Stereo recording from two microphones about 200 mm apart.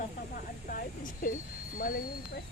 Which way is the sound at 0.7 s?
45° left (ahead or behind).